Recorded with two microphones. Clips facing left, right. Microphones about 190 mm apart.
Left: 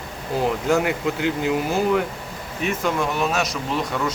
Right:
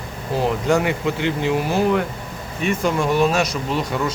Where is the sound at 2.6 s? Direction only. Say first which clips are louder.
Right 3 dB; centre (ahead or behind).